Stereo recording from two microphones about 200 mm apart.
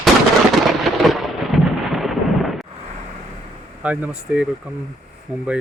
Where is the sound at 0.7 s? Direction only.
Centre (ahead or behind).